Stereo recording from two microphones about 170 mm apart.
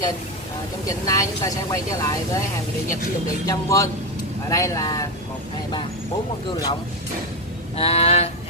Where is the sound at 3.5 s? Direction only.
20° left (ahead or behind).